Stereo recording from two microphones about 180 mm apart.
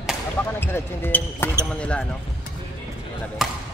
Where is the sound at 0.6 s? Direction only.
10° left (ahead or behind).